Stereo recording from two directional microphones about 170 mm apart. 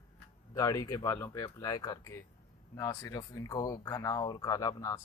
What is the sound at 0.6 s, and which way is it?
Speech, 20° left (ahead or behind).